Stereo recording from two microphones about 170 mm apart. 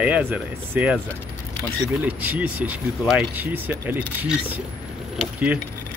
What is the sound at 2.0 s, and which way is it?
Speech, 10° right (ahead or behind).